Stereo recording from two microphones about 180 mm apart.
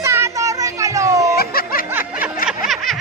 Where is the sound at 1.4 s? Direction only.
55° left (ahead or behind).